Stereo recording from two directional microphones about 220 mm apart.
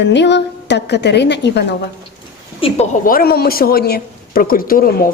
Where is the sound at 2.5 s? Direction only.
25° left (ahead or behind).